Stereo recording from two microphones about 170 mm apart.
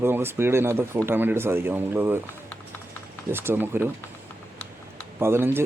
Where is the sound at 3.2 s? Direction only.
15° right (ahead or behind).